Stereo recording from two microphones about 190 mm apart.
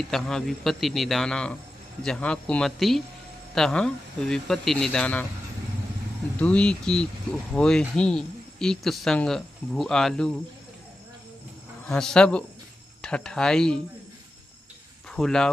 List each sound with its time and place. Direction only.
0.1 s speech: centre (ahead or behind)
6.4 s speech: 5° left (ahead or behind)
11.9 s speech: 5° left (ahead or behind)
15.0 s speech: 5° left (ahead or behind)